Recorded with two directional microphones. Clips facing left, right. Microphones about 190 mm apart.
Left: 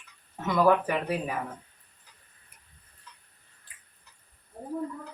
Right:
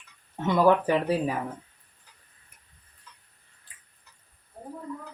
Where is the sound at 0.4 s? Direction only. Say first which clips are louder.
Right 2 dB; 30° right (ahead or behind).